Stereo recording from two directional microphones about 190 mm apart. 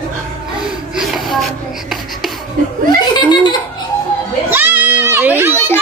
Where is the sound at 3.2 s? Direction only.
25° left (ahead or behind).